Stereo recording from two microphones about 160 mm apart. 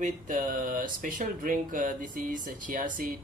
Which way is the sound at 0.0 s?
55° right (ahead or behind).